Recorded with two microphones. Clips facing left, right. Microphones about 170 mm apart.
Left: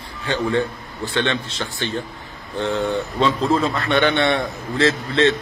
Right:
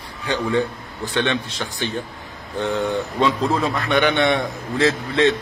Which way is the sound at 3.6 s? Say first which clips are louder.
Even; 15° right (ahead or behind).